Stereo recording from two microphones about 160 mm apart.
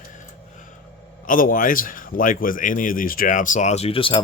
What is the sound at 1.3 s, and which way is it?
A man's voice, 60° left (ahead or behind).